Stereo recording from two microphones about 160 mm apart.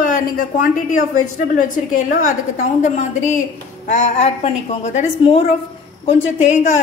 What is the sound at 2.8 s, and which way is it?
A woman's voice, 45° left (ahead or behind).